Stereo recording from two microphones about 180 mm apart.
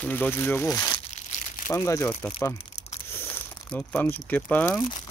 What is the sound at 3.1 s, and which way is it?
Speech, 10° left (ahead or behind).